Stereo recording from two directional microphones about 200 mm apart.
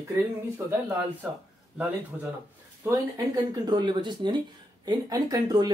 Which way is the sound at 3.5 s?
20° right (ahead or behind).